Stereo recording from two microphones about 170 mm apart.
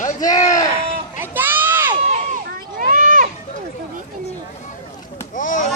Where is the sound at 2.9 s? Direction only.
50° right (ahead or behind).